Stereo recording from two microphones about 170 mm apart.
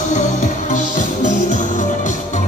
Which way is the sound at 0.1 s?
45° left (ahead or behind).